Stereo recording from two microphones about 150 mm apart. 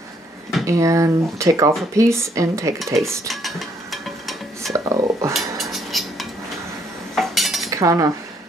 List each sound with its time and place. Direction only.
0.7 s speech: 20° right (ahead or behind)
3.3 s a sound: centre (ahead or behind)
4.7 s a sound: 20° right (ahead or behind)
5.3 s dishes: centre (ahead or behind)
7.2 s cutlery: centre (ahead or behind)
7.7 s cutlery: 20° right (ahead or behind)